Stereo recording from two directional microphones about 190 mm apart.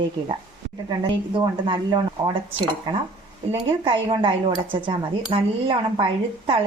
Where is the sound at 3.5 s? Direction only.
25° right (ahead or behind).